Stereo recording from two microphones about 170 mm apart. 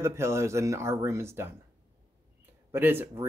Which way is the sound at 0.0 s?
15° right (ahead or behind).